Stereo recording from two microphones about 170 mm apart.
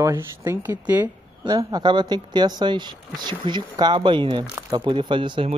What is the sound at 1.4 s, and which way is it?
Speech, 25° right (ahead or behind).